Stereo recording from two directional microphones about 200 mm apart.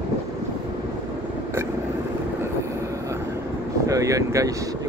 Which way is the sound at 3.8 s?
15° right (ahead or behind).